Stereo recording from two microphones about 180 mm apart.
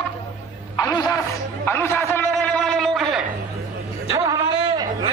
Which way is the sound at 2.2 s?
5° left (ahead or behind).